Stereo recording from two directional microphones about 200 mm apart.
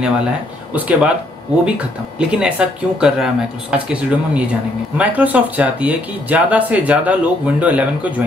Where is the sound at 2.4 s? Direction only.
5° right (ahead or behind).